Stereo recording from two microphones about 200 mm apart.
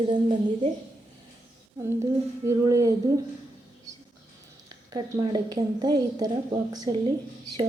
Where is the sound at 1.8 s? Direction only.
15° right (ahead or behind).